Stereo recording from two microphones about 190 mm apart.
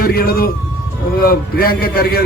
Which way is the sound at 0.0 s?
50° left (ahead or behind).